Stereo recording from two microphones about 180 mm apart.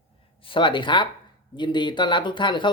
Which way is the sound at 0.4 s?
30° left (ahead or behind).